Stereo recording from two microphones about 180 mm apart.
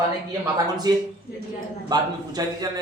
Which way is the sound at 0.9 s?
20° right (ahead or behind).